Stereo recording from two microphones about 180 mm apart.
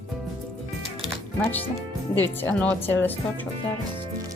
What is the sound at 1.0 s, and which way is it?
Music, 5° left (ahead or behind).